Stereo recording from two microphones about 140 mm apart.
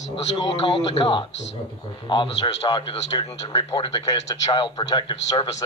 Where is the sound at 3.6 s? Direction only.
30° left (ahead or behind).